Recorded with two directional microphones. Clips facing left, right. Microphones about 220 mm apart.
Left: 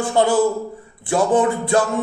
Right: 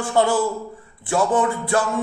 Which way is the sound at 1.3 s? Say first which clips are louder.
Left 3 dB; 20° left (ahead or behind).